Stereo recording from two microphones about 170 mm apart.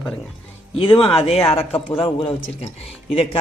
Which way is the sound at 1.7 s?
30° left (ahead or behind).